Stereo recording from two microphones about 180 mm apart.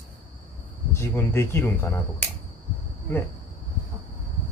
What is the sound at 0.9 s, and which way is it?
Speech, 15° left (ahead or behind).